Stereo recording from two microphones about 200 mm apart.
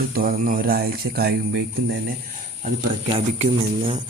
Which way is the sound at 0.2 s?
45° right (ahead or behind).